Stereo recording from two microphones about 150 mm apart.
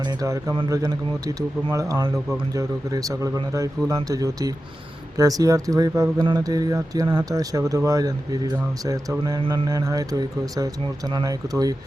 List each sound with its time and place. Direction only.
0.0 s speech: 20° right (ahead or behind)
9.4 s music: 35° right (ahead or behind)
9.6 s speech: 25° right (ahead or behind)